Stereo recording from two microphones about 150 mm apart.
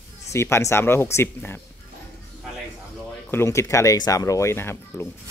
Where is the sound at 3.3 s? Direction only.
20° left (ahead or behind).